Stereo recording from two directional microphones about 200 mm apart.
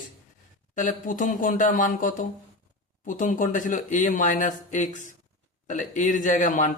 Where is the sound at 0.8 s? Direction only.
40° left (ahead or behind).